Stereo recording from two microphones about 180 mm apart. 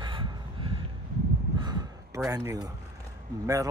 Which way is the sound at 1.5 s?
25° right (ahead or behind).